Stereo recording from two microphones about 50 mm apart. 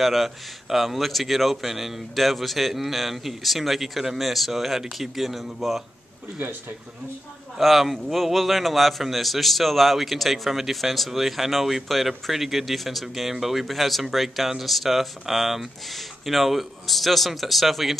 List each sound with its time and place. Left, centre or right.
0.0 s a man's voice: centre
6.4 s speech: right
7.5 s a man's voice: centre